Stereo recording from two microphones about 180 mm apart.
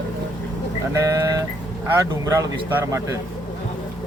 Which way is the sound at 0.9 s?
20° right (ahead or behind).